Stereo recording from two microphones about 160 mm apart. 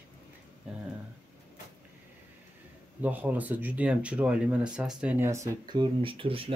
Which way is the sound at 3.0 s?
10° right (ahead or behind).